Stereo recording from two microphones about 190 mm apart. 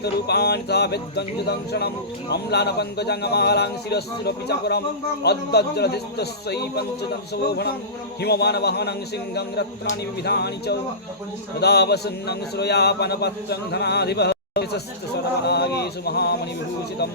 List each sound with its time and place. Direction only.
0.0 s a man's voice: 60° left (ahead or behind)